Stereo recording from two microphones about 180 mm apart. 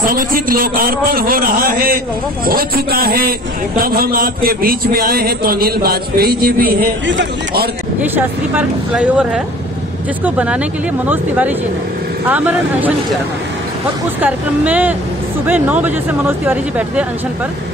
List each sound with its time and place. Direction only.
0.0 s a man's voice: 50° right (ahead or behind)
7.1 s a man's voice: 70° right (ahead or behind)
8.0 s speech: 10° right (ahead or behind)
14.2 s speech: 10° right (ahead or behind)